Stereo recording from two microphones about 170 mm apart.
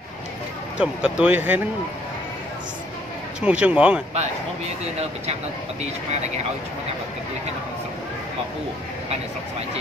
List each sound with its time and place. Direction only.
0.7 s speech: 5° right (ahead or behind)
3.3 s speech: 5° right (ahead or behind)
5.2 s speech: 40° right (ahead or behind)